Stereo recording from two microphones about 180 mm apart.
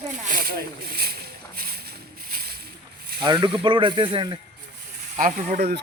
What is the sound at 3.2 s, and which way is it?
Speech, 25° right (ahead or behind).